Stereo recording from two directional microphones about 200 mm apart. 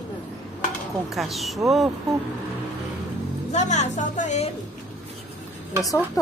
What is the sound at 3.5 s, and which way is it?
A woman's voice, 35° left (ahead or behind).